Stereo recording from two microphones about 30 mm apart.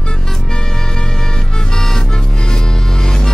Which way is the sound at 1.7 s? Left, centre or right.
Centre.